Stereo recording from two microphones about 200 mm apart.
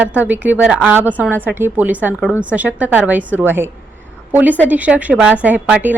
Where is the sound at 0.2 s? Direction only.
10° right (ahead or behind).